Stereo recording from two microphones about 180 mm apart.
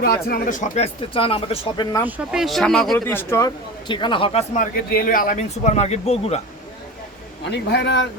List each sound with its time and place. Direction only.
0.0 s speech: 55° left (ahead or behind); by 1.9 s 30° left (ahead or behind)
2.0 s speech: 5° right (ahead or behind)
3.1 s speech: 15° left (ahead or behind); by 6.4 s 35° left (ahead or behind)
7.4 s speech: 65° left (ahead or behind)